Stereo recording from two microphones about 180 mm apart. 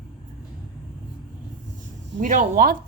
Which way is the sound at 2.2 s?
45° right (ahead or behind).